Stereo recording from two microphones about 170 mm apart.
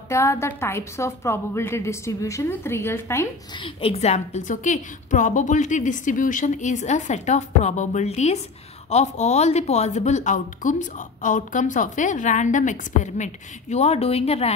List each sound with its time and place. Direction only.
0.1 s a woman's voice: 15° left (ahead or behind)
3.5 s speech: 30° left (ahead or behind)